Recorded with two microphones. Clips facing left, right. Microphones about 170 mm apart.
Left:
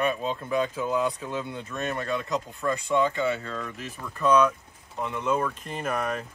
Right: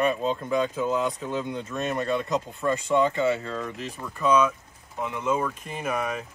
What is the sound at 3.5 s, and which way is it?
Speech, 20° right (ahead or behind).